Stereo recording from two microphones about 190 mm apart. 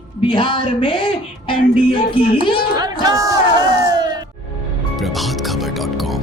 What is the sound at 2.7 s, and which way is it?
Speech, 20° right (ahead or behind).